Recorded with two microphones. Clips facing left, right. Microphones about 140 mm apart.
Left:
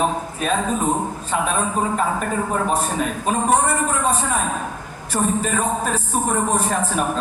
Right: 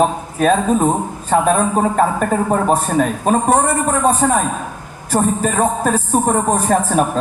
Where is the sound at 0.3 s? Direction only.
45° right (ahead or behind).